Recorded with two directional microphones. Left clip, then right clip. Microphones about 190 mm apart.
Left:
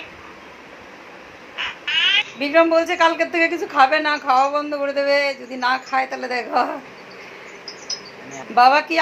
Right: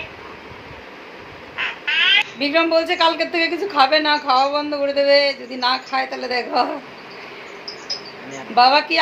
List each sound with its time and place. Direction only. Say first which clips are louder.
1.5 s quack: right 2 dB; 15° left (ahead or behind)
3.7 s a woman's voice: right 2 dB; 15° left (ahead or behind)
8.5 s a woman's voice: even; 15° left (ahead or behind)